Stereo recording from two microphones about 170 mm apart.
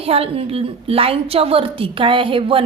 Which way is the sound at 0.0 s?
35° right (ahead or behind).